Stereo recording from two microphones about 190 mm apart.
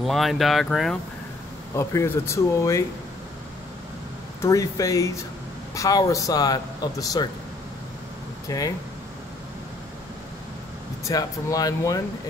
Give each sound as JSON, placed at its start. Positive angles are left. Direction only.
{"t": 0.0, "sound": "speech", "side_deg": 0}
{"t": 1.8, "sound": "speech", "side_deg": 15}
{"t": 4.4, "sound": "speech", "side_deg": 15}
{"t": 8.5, "sound": "speech", "side_deg": 20}
{"t": 11.1, "sound": "speech", "side_deg": 20}